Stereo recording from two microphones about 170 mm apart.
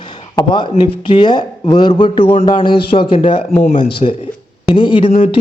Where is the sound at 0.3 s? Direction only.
30° left (ahead or behind).